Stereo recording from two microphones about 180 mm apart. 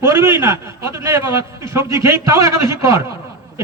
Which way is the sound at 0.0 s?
15° right (ahead or behind).